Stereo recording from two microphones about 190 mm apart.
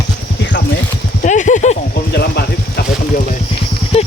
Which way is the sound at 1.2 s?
40° left (ahead or behind).